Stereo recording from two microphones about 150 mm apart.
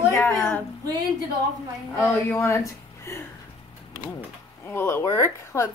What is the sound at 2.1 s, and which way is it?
Speech, 20° left (ahead or behind).